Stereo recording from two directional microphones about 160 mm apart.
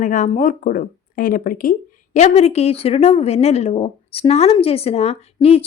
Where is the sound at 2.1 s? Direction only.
40° left (ahead or behind).